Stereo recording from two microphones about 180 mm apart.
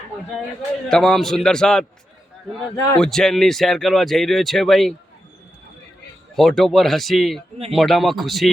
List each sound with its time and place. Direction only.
0.9 s a man's voice: centre (ahead or behind)
6.3 s a man's voice: centre (ahead or behind)